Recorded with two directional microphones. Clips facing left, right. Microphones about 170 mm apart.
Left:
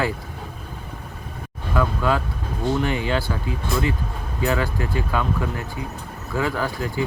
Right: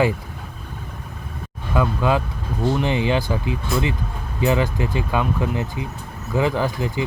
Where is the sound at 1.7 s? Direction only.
15° right (ahead or behind).